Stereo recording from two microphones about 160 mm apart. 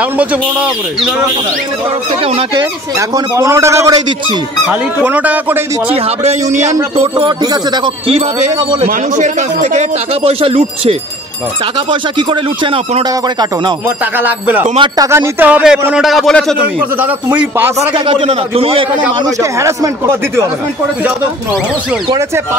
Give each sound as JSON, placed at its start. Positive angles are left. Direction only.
{"t": 3.3, "sound": "speech", "side_deg": -15}
{"t": 6.2, "sound": "speech", "side_deg": -45}
{"t": 7.2, "sound": "speech", "side_deg": -30}
{"t": 8.8, "sound": "speech", "side_deg": -50}
{"t": 14.1, "sound": "a man's voice", "side_deg": -10}
{"t": 16.5, "sound": "speech", "side_deg": -10}
{"t": 17.7, "sound": "speech", "side_deg": -35}
{"t": 19.2, "sound": "speech", "side_deg": -20}